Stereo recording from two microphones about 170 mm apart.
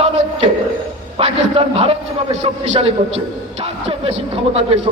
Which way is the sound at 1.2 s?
40° right (ahead or behind).